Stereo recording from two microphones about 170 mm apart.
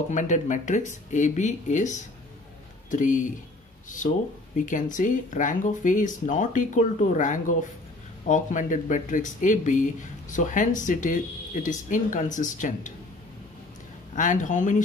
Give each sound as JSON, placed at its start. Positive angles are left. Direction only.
{"t": 0.1, "sound": "speech", "side_deg": 45}
{"t": 4.6, "sound": "speech", "side_deg": 50}
{"t": 14.1, "sound": "speech", "side_deg": 50}